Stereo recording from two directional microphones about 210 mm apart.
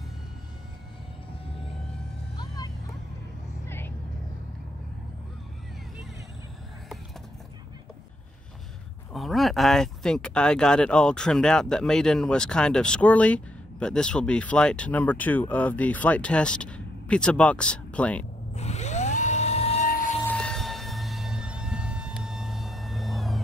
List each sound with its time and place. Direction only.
2.3 s vehicle: 20° left (ahead or behind)
3.6 s music: 10° left (ahead or behind)
9.1 s speech: centre (ahead or behind)
18.6 s vehicle: 30° left (ahead or behind)
19.9 s music: 40° left (ahead or behind)
20.2 s a sound: 5° left (ahead or behind)